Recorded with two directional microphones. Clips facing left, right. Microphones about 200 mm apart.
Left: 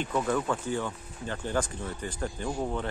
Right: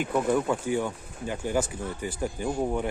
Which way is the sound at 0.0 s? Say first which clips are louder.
Right 4 dB; 10° right (ahead or behind).